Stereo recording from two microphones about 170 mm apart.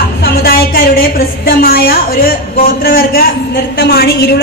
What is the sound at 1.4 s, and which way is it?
A woman's voice, 65° left (ahead or behind).